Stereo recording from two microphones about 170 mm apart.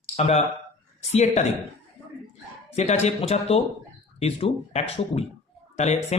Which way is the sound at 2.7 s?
40° left (ahead or behind).